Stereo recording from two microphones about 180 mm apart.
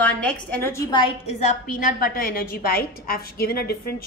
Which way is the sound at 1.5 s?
55° left (ahead or behind).